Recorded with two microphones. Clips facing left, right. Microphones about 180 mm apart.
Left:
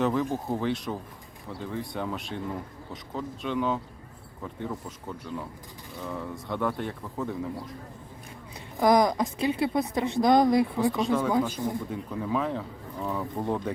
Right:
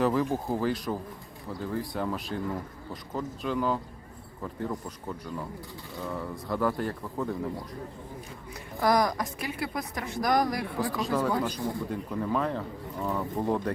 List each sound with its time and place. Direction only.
0.0 s speech: 5° right (ahead or behind)
8.8 s speech: 20° left (ahead or behind)
10.9 s speech: centre (ahead or behind)
11.3 s speech: 15° left (ahead or behind)
11.9 s speech: centre (ahead or behind)